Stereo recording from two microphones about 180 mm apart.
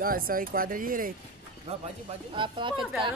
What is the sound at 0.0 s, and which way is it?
Speech, 50° right (ahead or behind).